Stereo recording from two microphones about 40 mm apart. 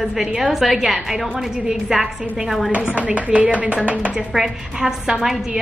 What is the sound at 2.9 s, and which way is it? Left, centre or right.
Speech, right.